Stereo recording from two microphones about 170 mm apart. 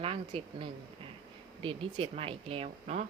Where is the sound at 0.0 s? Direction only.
35° right (ahead or behind).